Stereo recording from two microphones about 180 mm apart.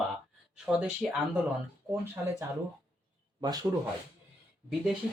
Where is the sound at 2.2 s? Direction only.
10° right (ahead or behind).